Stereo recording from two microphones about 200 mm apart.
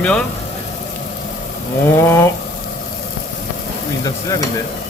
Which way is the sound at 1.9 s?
10° left (ahead or behind).